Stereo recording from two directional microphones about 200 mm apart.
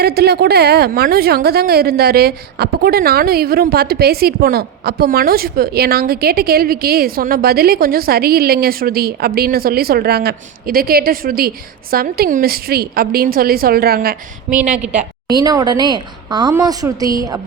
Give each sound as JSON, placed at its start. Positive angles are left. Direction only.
{"t": 0.0, "sound": "a woman's voice", "side_deg": -55}
{"t": 15.3, "sound": "a woman's voice", "side_deg": -20}